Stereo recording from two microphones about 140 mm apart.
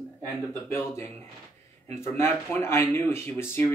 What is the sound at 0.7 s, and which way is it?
Speech, 20° left (ahead or behind).